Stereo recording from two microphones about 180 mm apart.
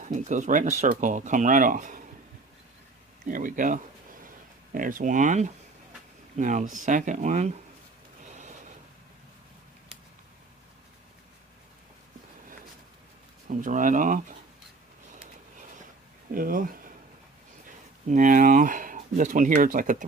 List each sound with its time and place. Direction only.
0.0 s speech: 45° right (ahead or behind)
3.2 s speech: 50° right (ahead or behind)
8.2 s a sound: 40° right (ahead or behind)
13.5 s speech: 45° right (ahead or behind)
16.3 s speech: 50° right (ahead or behind)